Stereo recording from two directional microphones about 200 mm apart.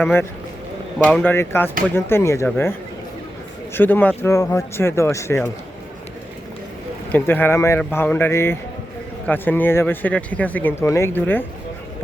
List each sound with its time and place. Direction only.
0.9 s speech: 5° left (ahead or behind)
3.8 s speech: 10° left (ahead or behind)
7.1 s speech: 10° left (ahead or behind)